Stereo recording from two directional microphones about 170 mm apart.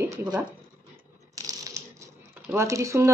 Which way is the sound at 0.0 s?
10° right (ahead or behind).